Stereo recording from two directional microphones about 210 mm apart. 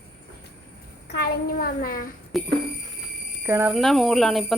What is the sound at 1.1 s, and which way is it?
A child's voice, 45° left (ahead or behind).